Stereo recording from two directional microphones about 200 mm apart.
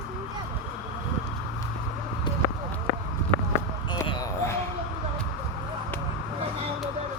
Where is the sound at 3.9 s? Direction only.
20° left (ahead or behind).